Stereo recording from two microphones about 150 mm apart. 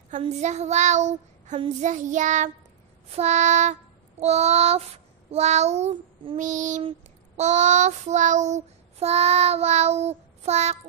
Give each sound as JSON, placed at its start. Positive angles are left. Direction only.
{"t": 0.2, "sound": "child singing", "side_deg": -50}
{"t": 6.8, "sound": "a sound", "side_deg": -35}
{"t": 7.4, "sound": "child singing", "side_deg": -50}